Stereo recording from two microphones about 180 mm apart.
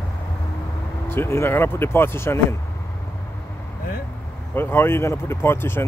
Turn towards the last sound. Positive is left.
turn(degrees=10)  # may be behind; listen again after turning